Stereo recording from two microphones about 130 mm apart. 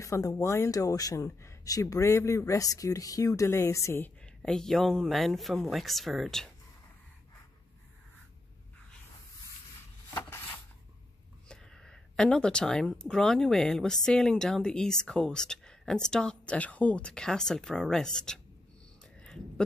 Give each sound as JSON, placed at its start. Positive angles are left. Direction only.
{"t": 0.0, "sound": "speech", "side_deg": 25}
{"t": 4.4, "sound": "speech", "side_deg": 5}
{"t": 11.4, "sound": "speech", "side_deg": 5}
{"t": 19.1, "sound": "a sound", "side_deg": 5}